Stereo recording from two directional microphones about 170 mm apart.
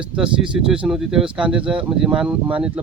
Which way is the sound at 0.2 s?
5° right (ahead or behind).